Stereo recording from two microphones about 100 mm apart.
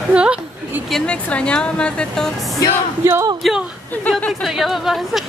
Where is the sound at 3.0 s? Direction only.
25° right (ahead or behind).